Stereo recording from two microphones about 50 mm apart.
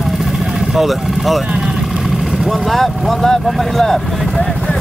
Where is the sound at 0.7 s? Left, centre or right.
Centre.